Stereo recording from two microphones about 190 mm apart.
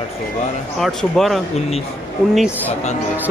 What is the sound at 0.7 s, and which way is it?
Speech, centre (ahead or behind).